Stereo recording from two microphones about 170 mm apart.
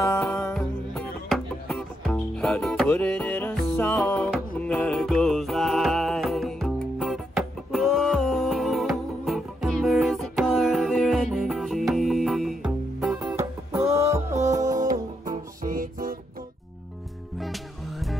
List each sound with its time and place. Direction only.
0.0 s music: 15° left (ahead or behind)
0.4 s music: 5° left (ahead or behind)
13.3 s music: 15° right (ahead or behind)
15.3 s music: 55° right (ahead or behind)
17.4 s music: centre (ahead or behind)